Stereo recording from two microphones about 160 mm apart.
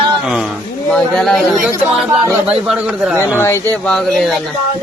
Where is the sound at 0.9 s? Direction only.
5° left (ahead or behind).